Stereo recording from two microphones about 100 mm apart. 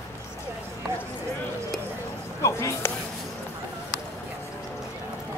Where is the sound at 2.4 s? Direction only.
30° left (ahead or behind).